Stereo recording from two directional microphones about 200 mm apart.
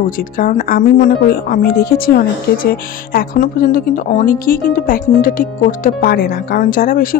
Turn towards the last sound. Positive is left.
turn(degrees=45)  # may be behind; listen again after turning